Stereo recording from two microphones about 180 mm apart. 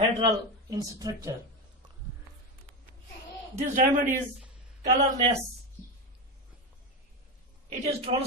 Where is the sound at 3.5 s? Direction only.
45° right (ahead or behind).